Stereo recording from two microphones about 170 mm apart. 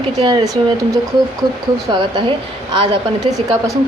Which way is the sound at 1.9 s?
25° right (ahead or behind).